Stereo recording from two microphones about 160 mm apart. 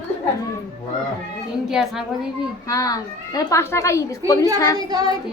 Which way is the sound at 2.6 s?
20° left (ahead or behind).